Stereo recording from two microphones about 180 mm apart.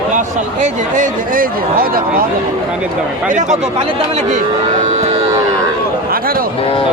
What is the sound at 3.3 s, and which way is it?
Speech, 45° right (ahead or behind).